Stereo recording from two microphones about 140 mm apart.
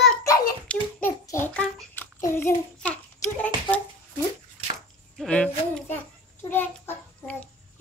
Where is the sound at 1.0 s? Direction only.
20° left (ahead or behind).